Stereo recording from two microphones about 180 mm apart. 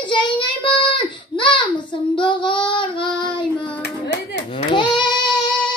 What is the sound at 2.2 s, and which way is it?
Child singing, 25° left (ahead or behind).